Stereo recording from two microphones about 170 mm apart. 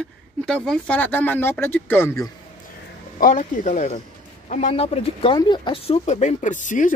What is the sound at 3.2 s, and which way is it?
Speech, 50° left (ahead or behind).